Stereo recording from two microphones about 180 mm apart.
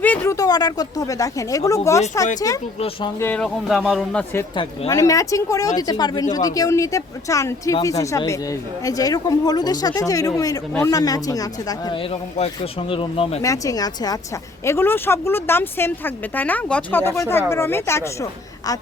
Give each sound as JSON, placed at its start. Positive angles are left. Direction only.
{"t": 0.0, "sound": "speech", "side_deg": 15}
{"t": 3.2, "sound": "speech", "side_deg": 10}
{"t": 4.9, "sound": "speech", "side_deg": 20}
{"t": 12.9, "sound": "speech", "side_deg": 30}
{"t": 13.4, "sound": "speech", "side_deg": 20}